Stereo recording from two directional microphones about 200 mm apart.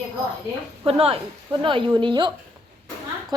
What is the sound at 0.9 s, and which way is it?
A woman's voice, 30° right (ahead or behind).